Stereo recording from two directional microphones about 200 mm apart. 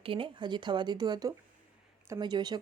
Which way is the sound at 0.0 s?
25° right (ahead or behind).